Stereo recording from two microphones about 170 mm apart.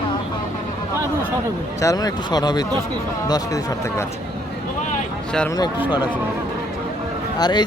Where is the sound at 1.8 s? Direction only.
20° left (ahead or behind).